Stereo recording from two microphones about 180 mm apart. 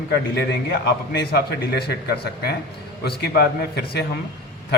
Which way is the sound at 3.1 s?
60° left (ahead or behind).